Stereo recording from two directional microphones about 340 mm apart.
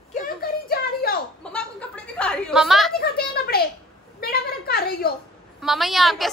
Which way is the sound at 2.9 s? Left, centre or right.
Left.